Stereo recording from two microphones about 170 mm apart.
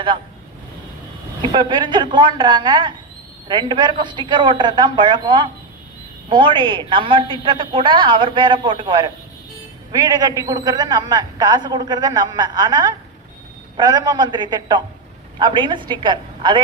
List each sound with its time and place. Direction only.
1.4 s a woman's voice: 25° right (ahead or behind)